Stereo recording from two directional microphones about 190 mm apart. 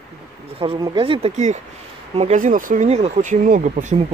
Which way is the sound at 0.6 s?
25° right (ahead or behind).